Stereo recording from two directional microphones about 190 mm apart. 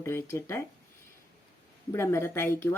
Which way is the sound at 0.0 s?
15° left (ahead or behind).